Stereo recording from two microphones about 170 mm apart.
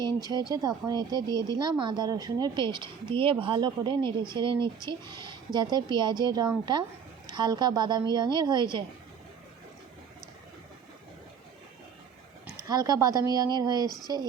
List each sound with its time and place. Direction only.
0.0 s speech: 25° right (ahead or behind)
12.6 s speech: 20° right (ahead or behind)
13.8 s speech: 25° left (ahead or behind)